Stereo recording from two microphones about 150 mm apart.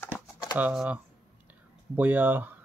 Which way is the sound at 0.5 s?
10° right (ahead or behind).